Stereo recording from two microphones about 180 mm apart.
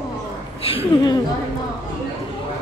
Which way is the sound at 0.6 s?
30° left (ahead or behind).